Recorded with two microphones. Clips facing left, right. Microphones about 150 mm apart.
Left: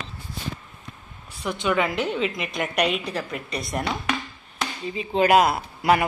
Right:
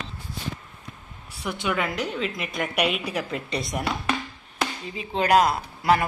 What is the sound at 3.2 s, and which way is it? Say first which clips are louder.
Speech: right 2 dB; 30° right (ahead or behind).